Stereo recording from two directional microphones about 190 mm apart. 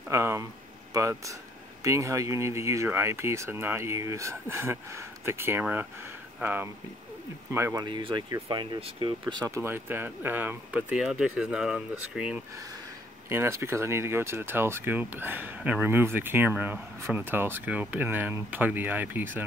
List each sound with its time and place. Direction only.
0.1 s speech: 15° right (ahead or behind)